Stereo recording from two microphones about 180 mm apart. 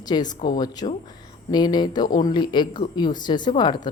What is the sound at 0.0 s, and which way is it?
A woman's voice, 20° left (ahead or behind).